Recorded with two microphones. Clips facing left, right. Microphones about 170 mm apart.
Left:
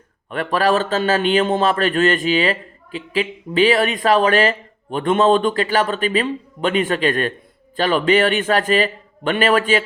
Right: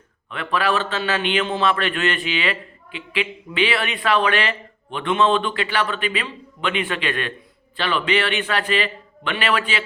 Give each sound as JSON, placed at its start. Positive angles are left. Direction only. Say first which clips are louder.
{"t": 0.3, "sound": "a man's voice", "louder": "left 5 dB", "side_deg": 40}